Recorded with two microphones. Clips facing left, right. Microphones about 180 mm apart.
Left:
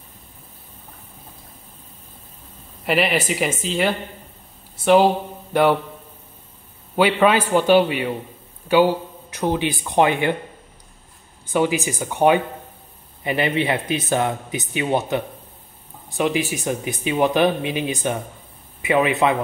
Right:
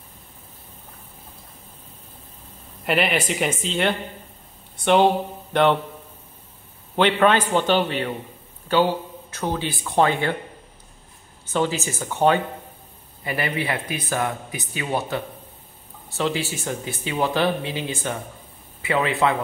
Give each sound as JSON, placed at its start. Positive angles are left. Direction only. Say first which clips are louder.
{"t": 2.8, "sound": "speech", "louder": "left 2 dB", "side_deg": 0}
{"t": 7.0, "sound": "a man's voice", "louder": "left 1 dB", "side_deg": 5}
{"t": 11.4, "sound": "speech", "louder": "left 3 dB", "side_deg": 15}